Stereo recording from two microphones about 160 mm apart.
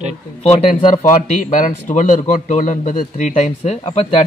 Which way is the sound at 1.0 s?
55° left (ahead or behind).